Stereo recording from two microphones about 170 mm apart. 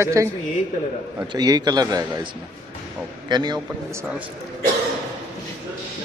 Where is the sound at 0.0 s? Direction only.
20° right (ahead or behind).